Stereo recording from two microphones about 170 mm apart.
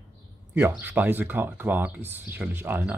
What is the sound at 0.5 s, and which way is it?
Speech, 10° right (ahead or behind).